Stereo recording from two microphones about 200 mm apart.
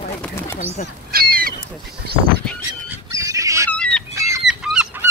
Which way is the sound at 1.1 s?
50° right (ahead or behind).